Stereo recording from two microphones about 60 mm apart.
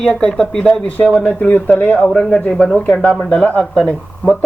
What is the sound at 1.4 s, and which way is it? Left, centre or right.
Speech, left.